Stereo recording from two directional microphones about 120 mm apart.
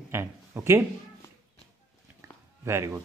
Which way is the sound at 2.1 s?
25° right (ahead or behind).